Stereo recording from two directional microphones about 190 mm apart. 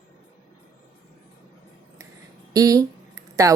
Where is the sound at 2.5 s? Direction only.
20° right (ahead or behind).